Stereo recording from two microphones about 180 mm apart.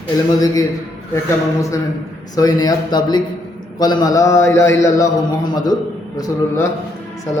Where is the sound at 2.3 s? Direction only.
20° left (ahead or behind).